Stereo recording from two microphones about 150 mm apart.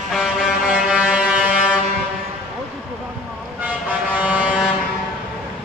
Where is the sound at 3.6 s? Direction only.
10° right (ahead or behind).